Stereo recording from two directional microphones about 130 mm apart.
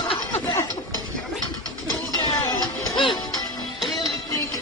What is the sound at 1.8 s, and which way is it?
Music, 30° left (ahead or behind).